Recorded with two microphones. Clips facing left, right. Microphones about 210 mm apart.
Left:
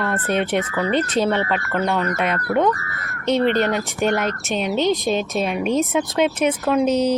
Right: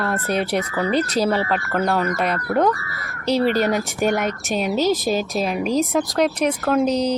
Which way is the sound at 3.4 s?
5° right (ahead or behind).